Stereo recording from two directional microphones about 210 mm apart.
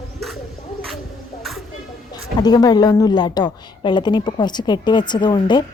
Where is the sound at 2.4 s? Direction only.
20° left (ahead or behind).